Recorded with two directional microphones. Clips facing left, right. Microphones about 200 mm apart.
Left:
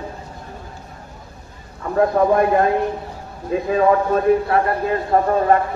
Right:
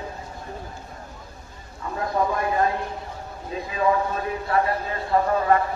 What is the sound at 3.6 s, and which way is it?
A man's voice, 55° left (ahead or behind).